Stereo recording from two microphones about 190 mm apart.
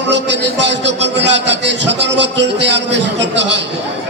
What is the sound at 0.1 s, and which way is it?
A man's voice, 70° right (ahead or behind).